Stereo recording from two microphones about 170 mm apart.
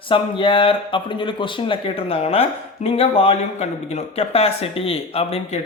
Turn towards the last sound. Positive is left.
turn(degrees=35)  # may be behind; listen again after turning